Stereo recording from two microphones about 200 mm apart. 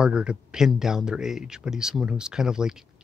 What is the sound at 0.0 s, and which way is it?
Speech, 5° right (ahead or behind).